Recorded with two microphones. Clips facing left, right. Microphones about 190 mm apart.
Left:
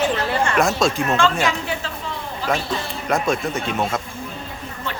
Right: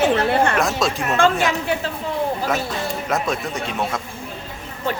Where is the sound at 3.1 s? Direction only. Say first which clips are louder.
Left 2 dB; centre (ahead or behind).